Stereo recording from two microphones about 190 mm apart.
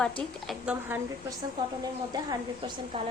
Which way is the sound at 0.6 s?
10° right (ahead or behind).